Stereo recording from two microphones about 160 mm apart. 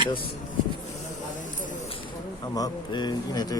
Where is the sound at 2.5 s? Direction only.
25° left (ahead or behind).